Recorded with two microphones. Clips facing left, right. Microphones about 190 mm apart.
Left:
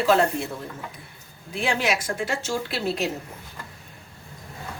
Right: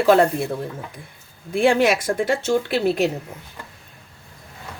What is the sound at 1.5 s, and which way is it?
Speech, 50° right (ahead or behind).